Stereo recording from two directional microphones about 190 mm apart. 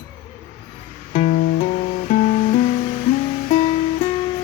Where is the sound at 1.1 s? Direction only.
40° left (ahead or behind).